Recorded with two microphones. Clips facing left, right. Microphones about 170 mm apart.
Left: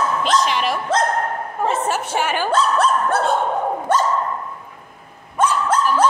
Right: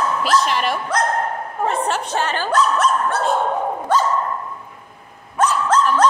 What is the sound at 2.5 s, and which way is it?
Speech, 30° left (ahead or behind).